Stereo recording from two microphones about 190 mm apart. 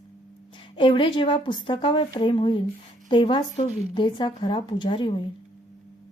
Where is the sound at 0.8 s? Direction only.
25° left (ahead or behind).